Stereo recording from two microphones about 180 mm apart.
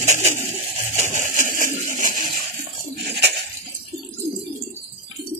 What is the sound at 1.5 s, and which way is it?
Pigeon, 45° right (ahead or behind).